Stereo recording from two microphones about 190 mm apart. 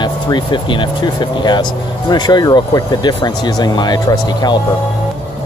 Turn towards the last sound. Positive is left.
turn(degrees=20)  # may be behind; listen again after turning